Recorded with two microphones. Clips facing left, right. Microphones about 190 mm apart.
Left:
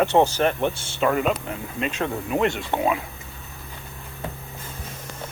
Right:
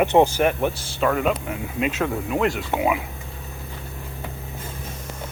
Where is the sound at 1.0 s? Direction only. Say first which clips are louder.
Even; 5° left (ahead or behind).